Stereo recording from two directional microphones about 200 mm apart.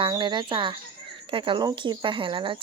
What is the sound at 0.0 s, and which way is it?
Speech, 25° right (ahead or behind).